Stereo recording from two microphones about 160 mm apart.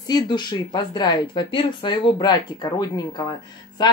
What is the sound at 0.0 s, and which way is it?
A woman's voice, 25° left (ahead or behind).